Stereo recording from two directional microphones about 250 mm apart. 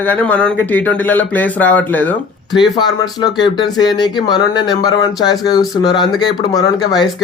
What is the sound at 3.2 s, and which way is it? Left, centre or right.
Speech, centre.